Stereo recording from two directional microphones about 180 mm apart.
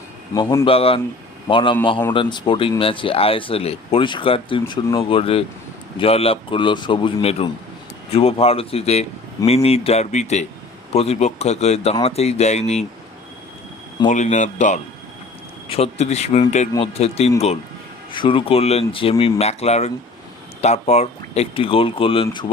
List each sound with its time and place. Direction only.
0.6 s speech: 30° left (ahead or behind)
14.1 s speech: 40° left (ahead or behind)